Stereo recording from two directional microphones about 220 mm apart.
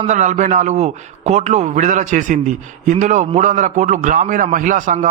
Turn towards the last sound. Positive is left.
turn(degrees=-35)  # may be behind; listen again after turning